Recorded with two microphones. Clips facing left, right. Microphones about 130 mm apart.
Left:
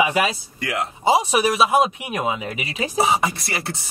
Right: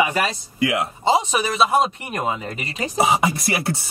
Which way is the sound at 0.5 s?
10° right (ahead or behind).